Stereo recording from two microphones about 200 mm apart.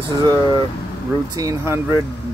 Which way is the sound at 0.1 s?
20° right (ahead or behind).